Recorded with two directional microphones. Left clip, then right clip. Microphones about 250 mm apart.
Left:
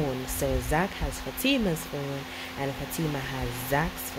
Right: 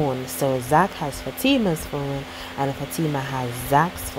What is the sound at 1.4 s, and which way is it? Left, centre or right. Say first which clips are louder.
Speech: right 6 dB; centre.